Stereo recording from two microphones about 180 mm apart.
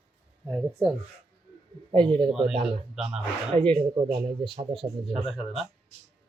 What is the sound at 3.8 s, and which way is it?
Speech, 30° right (ahead or behind).